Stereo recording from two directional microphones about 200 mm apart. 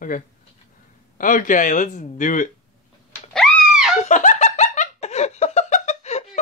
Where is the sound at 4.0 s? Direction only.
40° left (ahead or behind).